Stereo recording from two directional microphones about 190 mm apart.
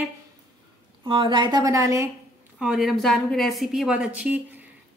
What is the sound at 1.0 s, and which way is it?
A woman's voice, 25° right (ahead or behind).